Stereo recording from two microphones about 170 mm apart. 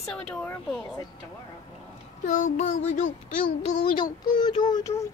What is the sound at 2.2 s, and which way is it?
A child's voice, 45° left (ahead or behind).